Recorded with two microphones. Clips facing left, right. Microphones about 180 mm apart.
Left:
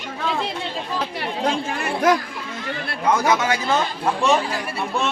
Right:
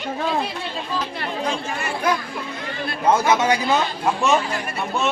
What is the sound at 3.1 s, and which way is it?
A man's voice, 25° right (ahead or behind).